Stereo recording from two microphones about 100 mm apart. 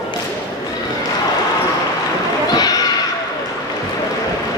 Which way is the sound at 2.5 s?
40° left (ahead or behind).